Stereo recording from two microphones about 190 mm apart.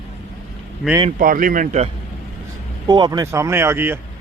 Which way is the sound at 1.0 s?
45° right (ahead or behind).